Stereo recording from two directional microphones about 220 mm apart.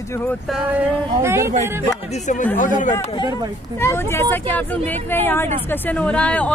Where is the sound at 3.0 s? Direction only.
25° left (ahead or behind).